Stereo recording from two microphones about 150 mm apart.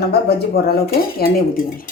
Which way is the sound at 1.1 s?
75° left (ahead or behind).